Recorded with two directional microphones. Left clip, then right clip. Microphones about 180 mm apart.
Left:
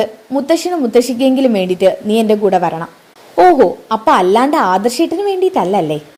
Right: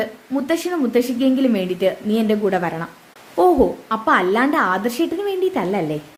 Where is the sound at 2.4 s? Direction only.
15° left (ahead or behind).